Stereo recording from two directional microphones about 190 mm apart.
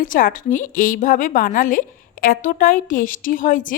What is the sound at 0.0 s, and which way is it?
A woman's voice, 45° left (ahead or behind).